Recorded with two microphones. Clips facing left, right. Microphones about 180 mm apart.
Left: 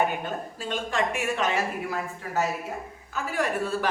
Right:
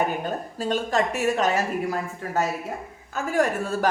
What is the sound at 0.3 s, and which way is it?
Speech, 40° right (ahead or behind).